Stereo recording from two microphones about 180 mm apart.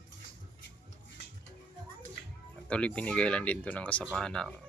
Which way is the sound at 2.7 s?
5° left (ahead or behind).